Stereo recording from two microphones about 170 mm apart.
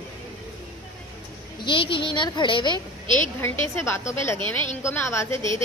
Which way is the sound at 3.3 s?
15° left (ahead or behind).